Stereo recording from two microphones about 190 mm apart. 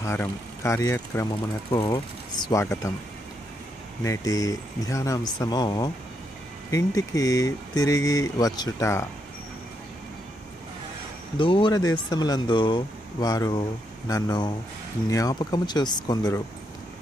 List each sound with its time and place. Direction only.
0.0 s speech: 15° left (ahead or behind)
4.0 s speech: 15° left (ahead or behind)
11.3 s speech: 25° left (ahead or behind)